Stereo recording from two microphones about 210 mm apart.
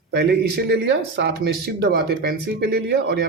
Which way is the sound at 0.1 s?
55° right (ahead or behind).